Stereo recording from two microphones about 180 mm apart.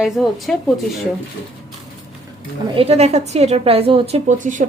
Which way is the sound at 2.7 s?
35° right (ahead or behind).